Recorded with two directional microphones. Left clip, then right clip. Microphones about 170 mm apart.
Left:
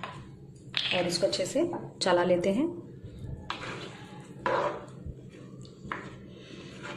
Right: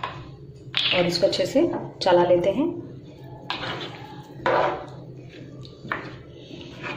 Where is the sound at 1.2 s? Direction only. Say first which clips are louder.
Right 7 dB; centre (ahead or behind).